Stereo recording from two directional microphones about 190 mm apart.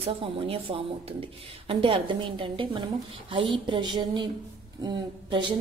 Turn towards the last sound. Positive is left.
turn(degrees=-25)  # may be behind; listen again after turning